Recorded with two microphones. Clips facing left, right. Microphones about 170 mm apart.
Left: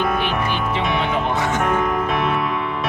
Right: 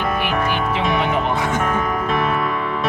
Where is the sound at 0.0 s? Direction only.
5° right (ahead or behind).